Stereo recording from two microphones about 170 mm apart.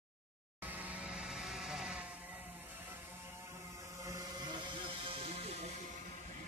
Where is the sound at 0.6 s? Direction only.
10° right (ahead or behind); by 5.7 s 35° right (ahead or behind).